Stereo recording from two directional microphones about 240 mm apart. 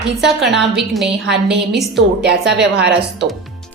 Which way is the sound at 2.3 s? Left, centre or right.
Right.